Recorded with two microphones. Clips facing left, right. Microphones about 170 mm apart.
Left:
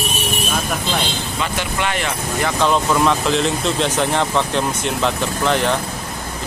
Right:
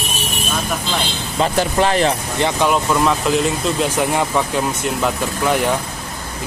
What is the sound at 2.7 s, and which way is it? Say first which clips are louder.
Speech: even; 5° right (ahead or behind).